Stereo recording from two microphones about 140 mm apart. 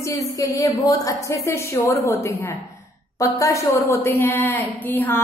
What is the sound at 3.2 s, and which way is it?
A woman's voice, 25° left (ahead or behind).